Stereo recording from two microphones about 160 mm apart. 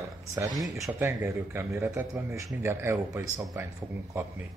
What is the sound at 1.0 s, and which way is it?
Speech, 15° right (ahead or behind).